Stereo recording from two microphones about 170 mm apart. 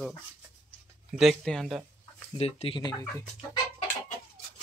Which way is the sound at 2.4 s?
35° left (ahead or behind).